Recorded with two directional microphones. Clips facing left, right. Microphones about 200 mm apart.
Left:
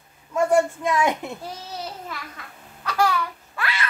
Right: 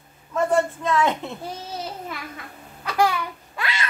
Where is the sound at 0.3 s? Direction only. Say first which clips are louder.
Left 2 dB; 10° left (ahead or behind).